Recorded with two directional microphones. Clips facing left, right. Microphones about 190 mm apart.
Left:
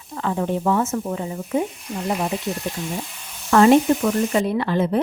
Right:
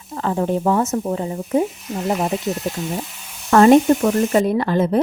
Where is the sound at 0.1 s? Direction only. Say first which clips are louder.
Right 3 dB; 35° right (ahead or behind).